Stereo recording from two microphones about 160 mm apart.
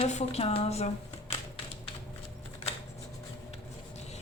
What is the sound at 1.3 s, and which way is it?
Typing, 45° left (ahead or behind).